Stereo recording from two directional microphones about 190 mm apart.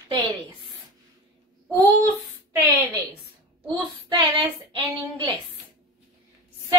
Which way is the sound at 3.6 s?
25° right (ahead or behind).